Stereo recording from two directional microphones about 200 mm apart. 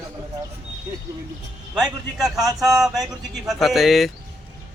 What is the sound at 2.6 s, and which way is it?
Speech, centre (ahead or behind).